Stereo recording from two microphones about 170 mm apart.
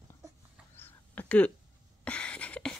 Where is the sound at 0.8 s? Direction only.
10° left (ahead or behind).